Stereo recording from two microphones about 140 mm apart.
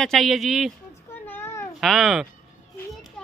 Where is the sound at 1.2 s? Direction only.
15° left (ahead or behind).